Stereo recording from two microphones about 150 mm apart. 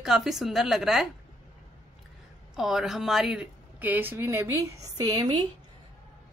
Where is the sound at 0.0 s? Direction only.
5° right (ahead or behind).